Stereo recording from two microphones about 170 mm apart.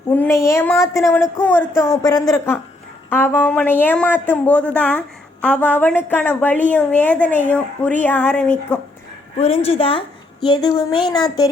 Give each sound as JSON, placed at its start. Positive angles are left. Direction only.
{"t": 0.1, "sound": "a sound", "side_deg": 10}
{"t": 0.4, "sound": "a woman's voice", "side_deg": 15}
{"t": 9.4, "sound": "a woman's voice", "side_deg": 35}